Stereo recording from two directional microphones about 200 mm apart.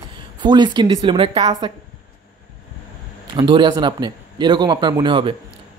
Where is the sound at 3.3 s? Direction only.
25° right (ahead or behind).